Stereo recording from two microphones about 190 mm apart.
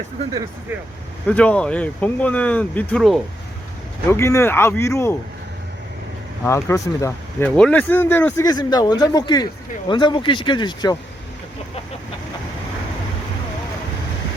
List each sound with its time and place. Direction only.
1.3 s speech: 5° left (ahead or behind)
4.1 s speech: 15° left (ahead or behind)
6.4 s speech: 15° left (ahead or behind)